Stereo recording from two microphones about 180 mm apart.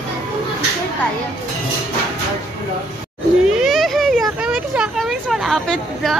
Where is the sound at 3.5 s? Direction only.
Centre (ahead or behind).